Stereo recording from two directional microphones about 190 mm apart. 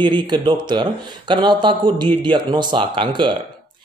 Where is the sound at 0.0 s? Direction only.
25° right (ahead or behind).